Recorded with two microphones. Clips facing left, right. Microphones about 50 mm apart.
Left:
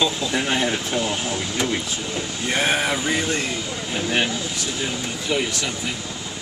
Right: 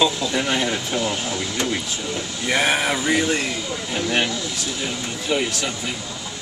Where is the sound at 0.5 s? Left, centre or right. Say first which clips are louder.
Even; centre.